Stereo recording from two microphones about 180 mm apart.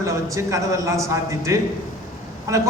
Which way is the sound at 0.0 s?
15° right (ahead or behind).